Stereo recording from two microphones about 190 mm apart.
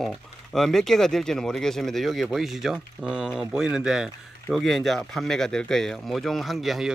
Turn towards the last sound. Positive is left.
turn(degrees=0)  # may be behind; listen again after turning